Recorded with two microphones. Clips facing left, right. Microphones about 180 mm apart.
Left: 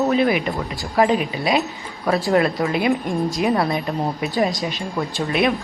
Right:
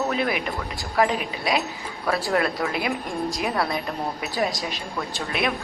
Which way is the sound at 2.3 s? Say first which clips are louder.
Left 6 dB; 20° left (ahead or behind).